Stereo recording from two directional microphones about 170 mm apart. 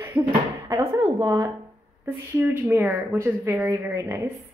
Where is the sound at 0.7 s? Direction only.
15° right (ahead or behind).